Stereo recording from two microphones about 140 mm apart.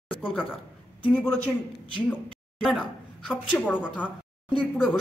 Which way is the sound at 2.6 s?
Centre (ahead or behind).